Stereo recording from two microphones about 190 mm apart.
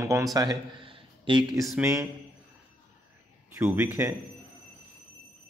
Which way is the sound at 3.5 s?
15° right (ahead or behind).